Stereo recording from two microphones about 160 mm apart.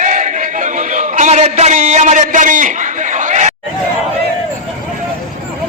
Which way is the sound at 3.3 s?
50° right (ahead or behind).